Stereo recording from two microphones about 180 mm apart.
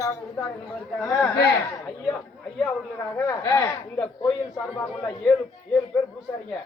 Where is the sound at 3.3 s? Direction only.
15° left (ahead or behind).